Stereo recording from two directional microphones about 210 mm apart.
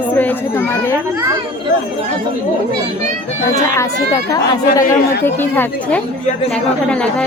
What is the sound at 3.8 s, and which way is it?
A woman's voice, 15° left (ahead or behind).